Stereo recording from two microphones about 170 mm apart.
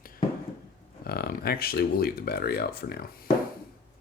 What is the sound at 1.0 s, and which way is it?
Speech, 65° left (ahead or behind).